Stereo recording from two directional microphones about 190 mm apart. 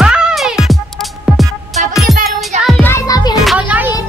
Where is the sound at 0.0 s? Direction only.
5° right (ahead or behind).